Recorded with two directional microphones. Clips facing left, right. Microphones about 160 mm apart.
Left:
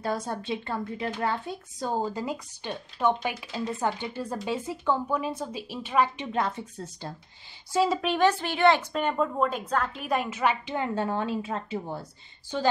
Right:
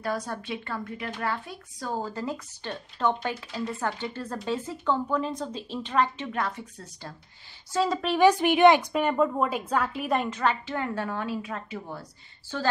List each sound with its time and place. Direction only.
0.0 s speech: 25° left (ahead or behind)
7.7 s a woman's voice: 5° left (ahead or behind)
8.2 s a woman's voice: 15° right (ahead or behind)
10.4 s a woman's voice: 15° left (ahead or behind)